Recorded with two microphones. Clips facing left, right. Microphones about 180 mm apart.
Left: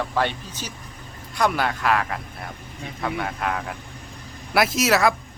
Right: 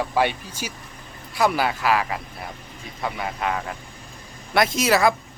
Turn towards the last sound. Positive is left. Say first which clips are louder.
# even
turn(degrees=0)  # may be behind; listen again after turning